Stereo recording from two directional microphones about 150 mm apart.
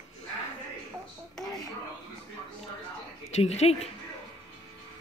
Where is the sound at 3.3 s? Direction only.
45° left (ahead or behind).